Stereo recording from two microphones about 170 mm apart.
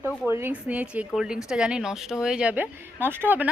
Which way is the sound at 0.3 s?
15° right (ahead or behind).